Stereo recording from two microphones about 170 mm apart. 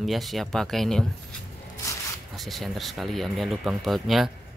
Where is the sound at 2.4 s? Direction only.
Centre (ahead or behind).